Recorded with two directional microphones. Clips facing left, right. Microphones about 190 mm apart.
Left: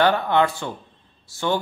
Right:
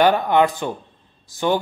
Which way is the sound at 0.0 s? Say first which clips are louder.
Right 3 dB; 15° right (ahead or behind).